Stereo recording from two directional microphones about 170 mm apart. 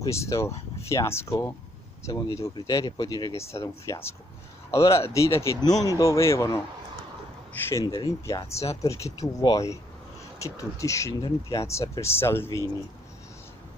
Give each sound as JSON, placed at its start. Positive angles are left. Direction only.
{"t": 0.0, "sound": "speech", "side_deg": 20}
{"t": 7.8, "sound": "speech", "side_deg": 20}